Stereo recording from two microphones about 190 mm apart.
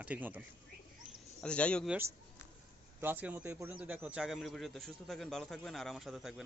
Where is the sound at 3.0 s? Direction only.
10° right (ahead or behind).